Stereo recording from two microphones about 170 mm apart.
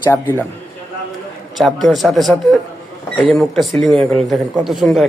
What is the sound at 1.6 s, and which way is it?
Speech, centre (ahead or behind).